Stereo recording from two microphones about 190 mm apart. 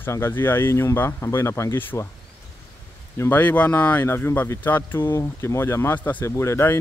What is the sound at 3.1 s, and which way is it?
Speech, 10° left (ahead or behind).